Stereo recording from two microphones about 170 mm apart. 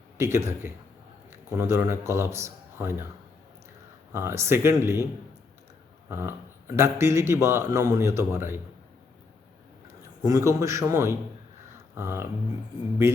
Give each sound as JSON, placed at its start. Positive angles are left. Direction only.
{"t": 0.2, "sound": "a man's voice", "side_deg": -15}
{"t": 4.1, "sound": "a man's voice", "side_deg": -15}
{"t": 6.1, "sound": "a man's voice", "side_deg": -15}
{"t": 9.8, "sound": "a man's voice", "side_deg": -20}